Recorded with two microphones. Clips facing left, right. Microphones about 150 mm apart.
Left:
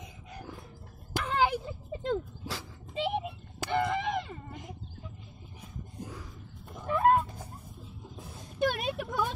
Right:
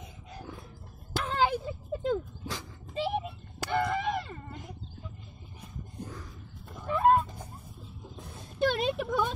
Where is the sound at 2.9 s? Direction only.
20° left (ahead or behind).